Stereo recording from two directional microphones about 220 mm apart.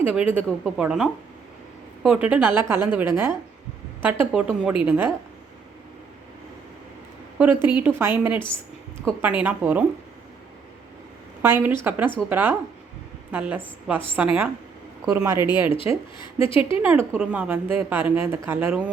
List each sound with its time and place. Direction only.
0.1 s speech: 5° right (ahead or behind)
7.3 s speech: 10° right (ahead or behind)
11.4 s speech: 10° right (ahead or behind)
15.0 s speech: 10° right (ahead or behind)
15.4 s speech: 20° left (ahead or behind)
16.8 s speech: 10° right (ahead or behind)